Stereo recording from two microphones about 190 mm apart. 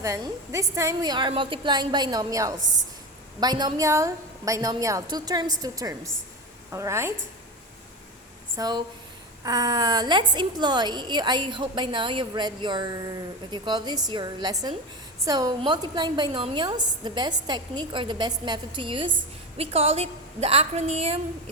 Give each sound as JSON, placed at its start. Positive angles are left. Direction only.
{"t": 0.0, "sound": "a woman's voice", "side_deg": -15}
{"t": 8.5, "sound": "a woman's voice", "side_deg": -20}